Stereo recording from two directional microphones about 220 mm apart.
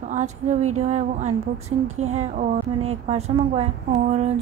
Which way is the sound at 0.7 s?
30° right (ahead or behind).